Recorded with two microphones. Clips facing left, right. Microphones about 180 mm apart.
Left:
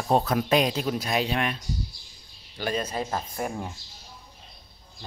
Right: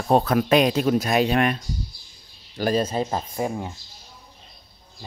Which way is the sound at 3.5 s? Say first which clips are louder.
Right 4 dB; 10° right (ahead or behind).